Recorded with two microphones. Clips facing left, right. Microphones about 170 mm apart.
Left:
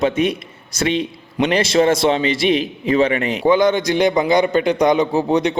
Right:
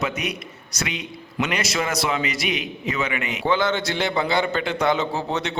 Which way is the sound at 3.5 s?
15° left (ahead or behind).